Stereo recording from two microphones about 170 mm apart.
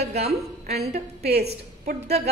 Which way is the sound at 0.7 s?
70° right (ahead or behind).